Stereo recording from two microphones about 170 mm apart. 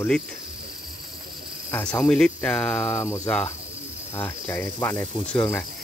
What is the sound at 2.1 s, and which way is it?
Speech, centre (ahead or behind).